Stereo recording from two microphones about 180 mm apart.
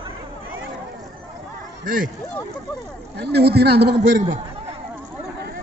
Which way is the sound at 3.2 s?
65° right (ahead or behind).